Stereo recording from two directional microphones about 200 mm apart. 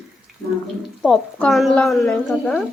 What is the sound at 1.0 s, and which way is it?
A woman's voice, centre (ahead or behind).